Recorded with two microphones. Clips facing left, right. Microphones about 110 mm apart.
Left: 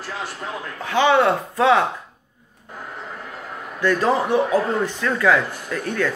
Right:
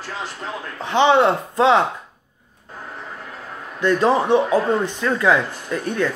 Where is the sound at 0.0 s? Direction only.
10° left (ahead or behind).